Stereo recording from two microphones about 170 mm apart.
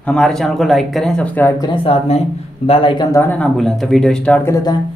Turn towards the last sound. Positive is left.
turn(degrees=20)  # may be behind; listen again after turning